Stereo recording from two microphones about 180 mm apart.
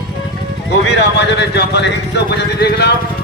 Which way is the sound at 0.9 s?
70° left (ahead or behind).